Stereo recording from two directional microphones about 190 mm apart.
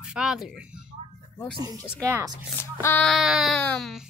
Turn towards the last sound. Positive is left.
turn(degrees=5)  # may be behind; listen again after turning